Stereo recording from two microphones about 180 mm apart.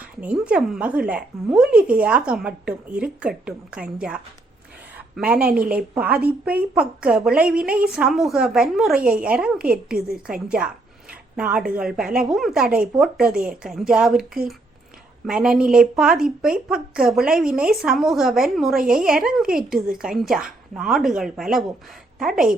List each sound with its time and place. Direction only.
0.2 s a woman's voice: 5° right (ahead or behind)
15.3 s a woman's voice: 5° right (ahead or behind)